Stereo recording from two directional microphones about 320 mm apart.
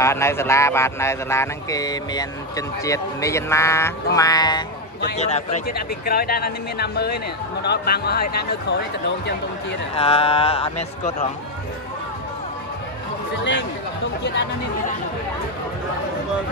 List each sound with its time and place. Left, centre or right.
0.0 s speech: centre; by 9.8 s left
9.9 s speech: centre
13.4 s speech: left